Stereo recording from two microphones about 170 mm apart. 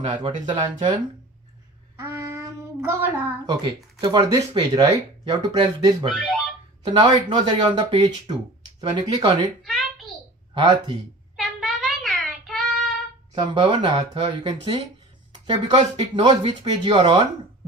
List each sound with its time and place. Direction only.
0.0 s speech: 30° right (ahead or behind)
2.0 s child singing: 15° right (ahead or behind)
3.6 s speech: 25° right (ahead or behind)
6.2 s a sound: centre (ahead or behind)
6.8 s speech: 25° right (ahead or behind)
9.6 s a sound: centre (ahead or behind)
10.5 s speech: 25° right (ahead or behind)
11.3 s child singing: centre (ahead or behind)
13.3 s speech: 25° right (ahead or behind)